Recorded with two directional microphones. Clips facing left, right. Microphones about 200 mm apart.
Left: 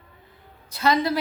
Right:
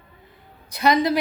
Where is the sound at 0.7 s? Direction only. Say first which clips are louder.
Right 3 dB; 15° right (ahead or behind).